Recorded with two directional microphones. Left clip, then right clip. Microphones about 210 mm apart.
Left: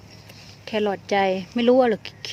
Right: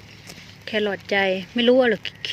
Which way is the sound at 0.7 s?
5° left (ahead or behind).